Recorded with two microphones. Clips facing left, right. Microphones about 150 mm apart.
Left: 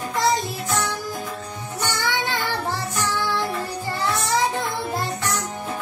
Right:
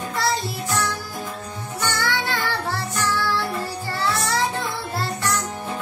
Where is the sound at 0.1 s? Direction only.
15° left (ahead or behind).